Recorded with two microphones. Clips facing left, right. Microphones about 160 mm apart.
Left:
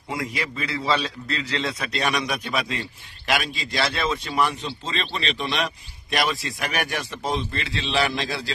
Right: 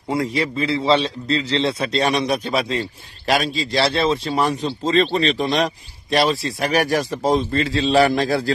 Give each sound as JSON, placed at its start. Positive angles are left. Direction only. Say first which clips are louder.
{"t": 0.1, "sound": "a man's voice", "louder": "right 8 dB", "side_deg": -30}